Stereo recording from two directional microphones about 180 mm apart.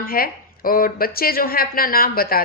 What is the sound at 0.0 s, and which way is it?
Speech, 55° left (ahead or behind).